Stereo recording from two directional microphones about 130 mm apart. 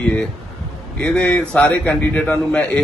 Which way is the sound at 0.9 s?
10° left (ahead or behind).